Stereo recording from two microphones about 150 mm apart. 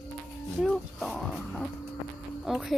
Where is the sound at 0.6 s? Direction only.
5° left (ahead or behind).